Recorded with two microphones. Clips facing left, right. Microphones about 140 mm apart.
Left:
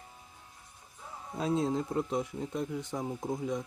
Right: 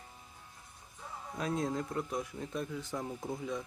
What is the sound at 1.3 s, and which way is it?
Speech, 25° left (ahead or behind).